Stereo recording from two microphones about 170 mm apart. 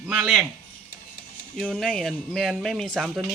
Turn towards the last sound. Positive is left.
turn(degrees=0)  # may be behind; listen again after turning